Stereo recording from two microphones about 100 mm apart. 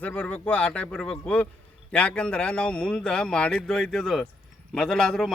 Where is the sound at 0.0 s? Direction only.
15° left (ahead or behind).